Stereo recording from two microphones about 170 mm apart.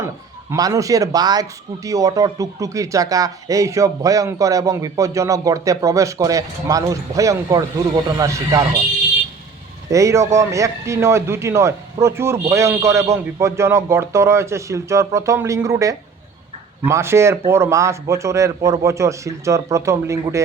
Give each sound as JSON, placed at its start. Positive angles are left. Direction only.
{"t": 0.5, "sound": "speech", "side_deg": -20}
{"t": 9.9, "sound": "a man's voice", "side_deg": -15}